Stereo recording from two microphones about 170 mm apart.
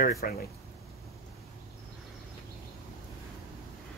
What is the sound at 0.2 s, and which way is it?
Speech, 65° left (ahead or behind).